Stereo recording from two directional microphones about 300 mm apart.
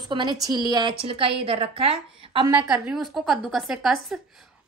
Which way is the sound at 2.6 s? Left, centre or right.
Centre.